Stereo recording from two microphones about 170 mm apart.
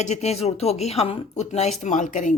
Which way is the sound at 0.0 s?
40° left (ahead or behind).